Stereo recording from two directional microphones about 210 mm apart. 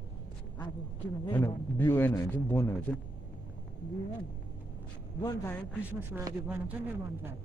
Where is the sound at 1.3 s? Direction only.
10° left (ahead or behind).